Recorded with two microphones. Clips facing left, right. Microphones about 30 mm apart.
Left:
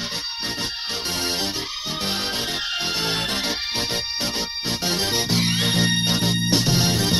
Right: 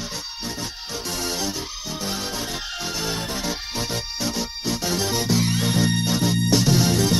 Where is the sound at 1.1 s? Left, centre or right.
Left.